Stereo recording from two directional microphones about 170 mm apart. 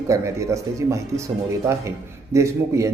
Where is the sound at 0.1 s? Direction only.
20° right (ahead or behind).